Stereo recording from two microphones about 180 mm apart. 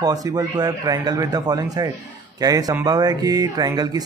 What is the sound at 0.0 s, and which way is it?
Speech, 20° right (ahead or behind).